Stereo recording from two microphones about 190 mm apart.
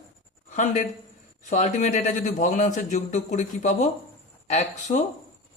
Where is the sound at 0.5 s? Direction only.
40° left (ahead or behind).